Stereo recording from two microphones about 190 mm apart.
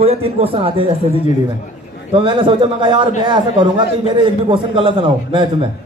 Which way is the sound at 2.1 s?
25° right (ahead or behind).